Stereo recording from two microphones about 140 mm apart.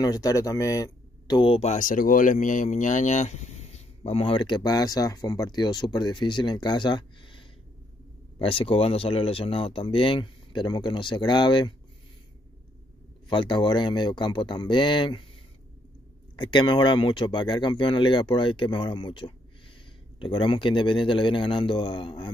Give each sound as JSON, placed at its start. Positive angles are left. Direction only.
{"t": 0.0, "sound": "speech", "side_deg": 25}
{"t": 1.9, "sound": "speech", "side_deg": 75}
{"t": 13.3, "sound": "speech", "side_deg": 35}
{"t": 16.3, "sound": "speech", "side_deg": 35}